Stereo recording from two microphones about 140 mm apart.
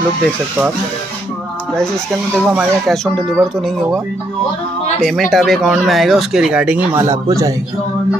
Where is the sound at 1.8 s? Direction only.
5° left (ahead or behind).